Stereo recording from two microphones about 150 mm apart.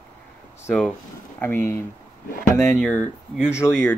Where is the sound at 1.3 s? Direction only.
15° left (ahead or behind).